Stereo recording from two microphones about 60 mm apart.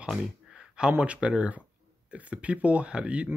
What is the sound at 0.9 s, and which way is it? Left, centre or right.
Speech, right.